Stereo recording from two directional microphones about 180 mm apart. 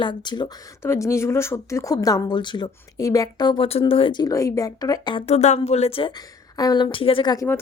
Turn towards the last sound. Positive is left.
turn(degrees=20)  # may be behind; listen again after turning